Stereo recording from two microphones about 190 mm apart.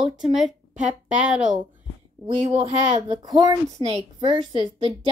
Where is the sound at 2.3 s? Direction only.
30° right (ahead or behind).